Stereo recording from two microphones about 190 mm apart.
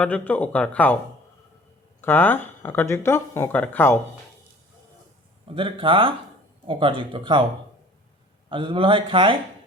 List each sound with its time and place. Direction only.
0.0 s speech: 10° left (ahead or behind)
2.0 s speech: 10° left (ahead or behind)
5.5 s a man's voice: 25° right (ahead or behind)
8.4 s a man's voice: 25° right (ahead or behind)